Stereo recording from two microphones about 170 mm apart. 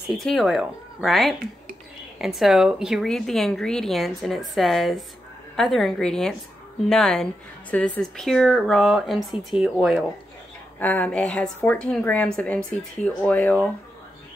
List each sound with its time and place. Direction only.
0.1 s a woman's voice: centre (ahead or behind)